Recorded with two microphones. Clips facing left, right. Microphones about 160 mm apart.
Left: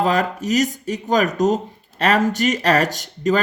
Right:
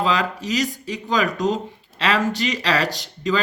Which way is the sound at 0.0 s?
50° left (ahead or behind).